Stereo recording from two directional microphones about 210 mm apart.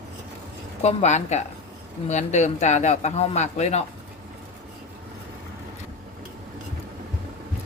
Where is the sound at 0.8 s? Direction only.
30° left (ahead or behind).